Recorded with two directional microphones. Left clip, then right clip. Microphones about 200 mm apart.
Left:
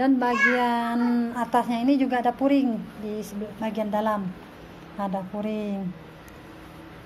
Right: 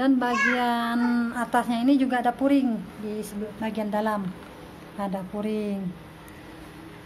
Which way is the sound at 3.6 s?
5° right (ahead or behind).